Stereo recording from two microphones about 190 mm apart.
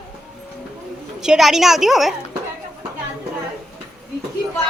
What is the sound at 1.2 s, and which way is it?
Speech, centre (ahead or behind).